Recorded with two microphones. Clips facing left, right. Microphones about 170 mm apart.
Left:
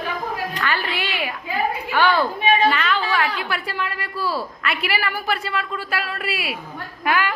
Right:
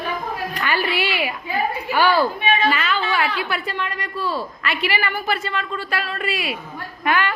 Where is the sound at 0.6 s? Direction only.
10° right (ahead or behind); by 7.4 s 10° left (ahead or behind).